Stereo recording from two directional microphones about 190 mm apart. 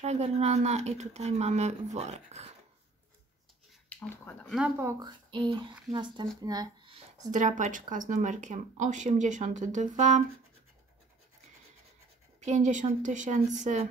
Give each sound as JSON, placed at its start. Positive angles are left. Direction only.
{"t": 0.0, "sound": "speech", "side_deg": -35}
{"t": 3.9, "sound": "speech", "side_deg": 10}
{"t": 4.6, "sound": "speech", "side_deg": -10}
{"t": 7.2, "sound": "speech", "side_deg": -40}
{"t": 12.4, "sound": "speech", "side_deg": -40}